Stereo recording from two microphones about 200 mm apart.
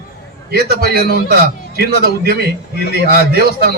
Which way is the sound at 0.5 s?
50° right (ahead or behind).